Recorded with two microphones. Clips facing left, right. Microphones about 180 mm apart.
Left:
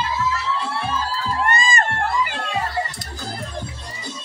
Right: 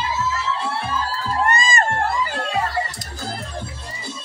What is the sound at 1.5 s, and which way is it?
Crowd, 40° right (ahead or behind).